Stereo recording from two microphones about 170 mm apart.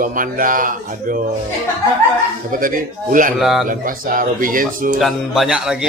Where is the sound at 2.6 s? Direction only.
50° right (ahead or behind).